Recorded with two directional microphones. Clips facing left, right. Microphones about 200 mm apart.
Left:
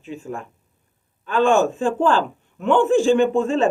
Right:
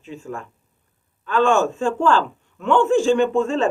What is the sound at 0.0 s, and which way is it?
A man's voice, 15° left (ahead or behind).